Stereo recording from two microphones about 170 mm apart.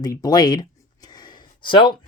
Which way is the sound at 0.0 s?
25° left (ahead or behind).